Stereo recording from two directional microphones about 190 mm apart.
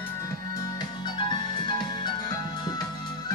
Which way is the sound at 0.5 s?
20° left (ahead or behind).